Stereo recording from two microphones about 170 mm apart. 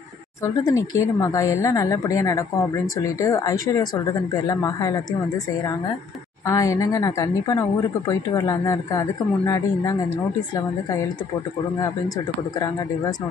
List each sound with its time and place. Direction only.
0.4 s speech: 20° left (ahead or behind)
6.4 s speech: 20° left (ahead or behind)